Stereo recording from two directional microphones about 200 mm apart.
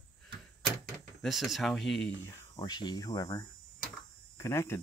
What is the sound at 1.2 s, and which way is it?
Speech, centre (ahead or behind).